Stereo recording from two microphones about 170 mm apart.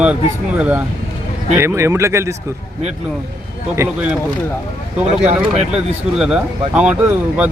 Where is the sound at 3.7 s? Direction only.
10° right (ahead or behind).